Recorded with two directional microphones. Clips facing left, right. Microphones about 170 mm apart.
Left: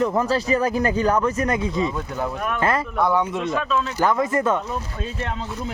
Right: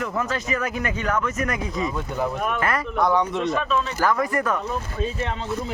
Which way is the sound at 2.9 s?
5° left (ahead or behind).